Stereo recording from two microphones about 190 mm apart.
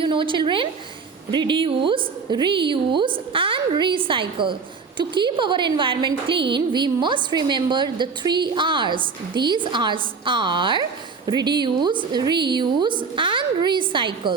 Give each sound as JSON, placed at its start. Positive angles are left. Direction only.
{"t": 0.0, "sound": "a woman's voice", "side_deg": -25}